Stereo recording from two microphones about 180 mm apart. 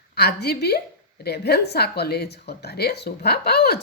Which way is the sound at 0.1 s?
60° left (ahead or behind).